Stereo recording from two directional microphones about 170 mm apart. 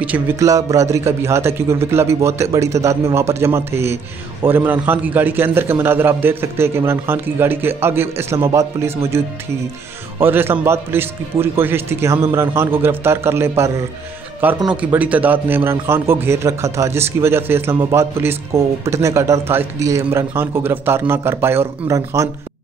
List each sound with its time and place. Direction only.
0.0 s a man's voice: 10° right (ahead or behind)
0.5 s a man's voice: 20° right (ahead or behind)
14.7 s a man's voice: 10° right (ahead or behind)